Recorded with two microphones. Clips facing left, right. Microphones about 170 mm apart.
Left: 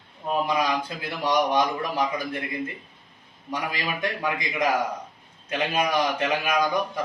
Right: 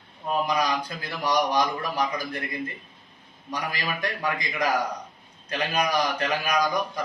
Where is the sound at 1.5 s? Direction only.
25° left (ahead or behind).